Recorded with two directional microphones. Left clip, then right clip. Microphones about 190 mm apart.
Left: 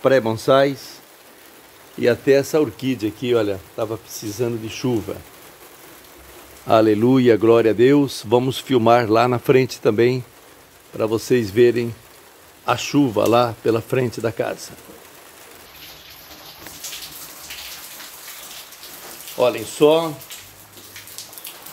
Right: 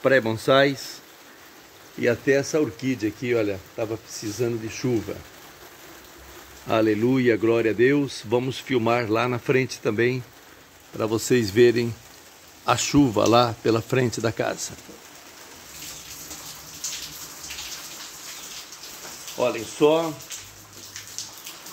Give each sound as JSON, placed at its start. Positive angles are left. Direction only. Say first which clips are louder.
{"t": 0.0, "sound": "speech", "louder": "left 3 dB", "side_deg": 10}
{"t": 2.0, "sound": "speech", "louder": "left 5 dB", "side_deg": 20}
{"t": 6.7, "sound": "speech", "louder": "left 6 dB", "side_deg": 20}
{"t": 11.0, "sound": "speech", "louder": "left 3 dB", "side_deg": 0}
{"t": 19.3, "sound": "speech", "louder": "left 6 dB", "side_deg": 30}